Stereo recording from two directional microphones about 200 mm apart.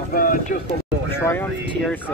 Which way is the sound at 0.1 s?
45° left (ahead or behind).